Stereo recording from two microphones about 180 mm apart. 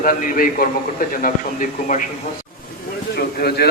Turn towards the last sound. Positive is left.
turn(degrees=60)  # may be behind; listen again after turning